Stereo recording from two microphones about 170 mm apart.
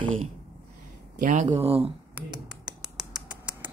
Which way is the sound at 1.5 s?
35° right (ahead or behind).